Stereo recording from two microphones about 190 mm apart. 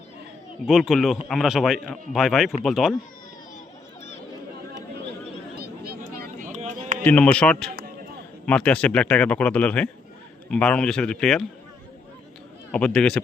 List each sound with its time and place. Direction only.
0.7 s a man's voice: centre (ahead or behind)
5.5 s a sound: 50° right (ahead or behind)
7.0 s a man's voice: 10° left (ahead or behind)
12.7 s a man's voice: 5° left (ahead or behind)